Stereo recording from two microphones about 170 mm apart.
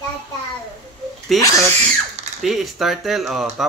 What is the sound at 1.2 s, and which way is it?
Speech, centre (ahead or behind).